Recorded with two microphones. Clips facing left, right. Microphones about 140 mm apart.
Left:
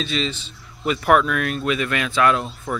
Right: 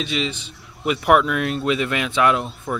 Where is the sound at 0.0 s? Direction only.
15° right (ahead or behind).